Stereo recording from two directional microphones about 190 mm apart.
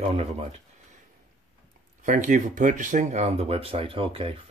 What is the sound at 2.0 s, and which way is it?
Speech, 40° right (ahead or behind).